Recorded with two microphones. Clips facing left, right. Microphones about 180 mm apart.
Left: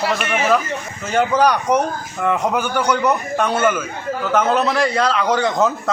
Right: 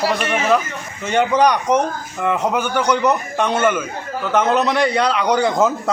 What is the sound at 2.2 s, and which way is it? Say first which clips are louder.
Speech: even; 5° right (ahead or behind).